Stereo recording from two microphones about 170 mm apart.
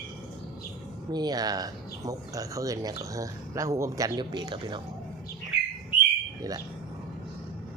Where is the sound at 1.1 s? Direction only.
25° right (ahead or behind).